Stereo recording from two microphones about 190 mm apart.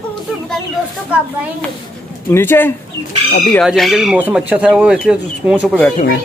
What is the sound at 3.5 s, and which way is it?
Speech, centre (ahead or behind).